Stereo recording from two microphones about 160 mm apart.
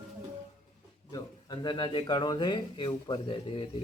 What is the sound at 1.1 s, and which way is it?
Speech, 30° left (ahead or behind).